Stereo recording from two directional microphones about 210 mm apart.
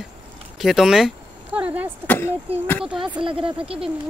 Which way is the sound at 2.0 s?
10° left (ahead or behind).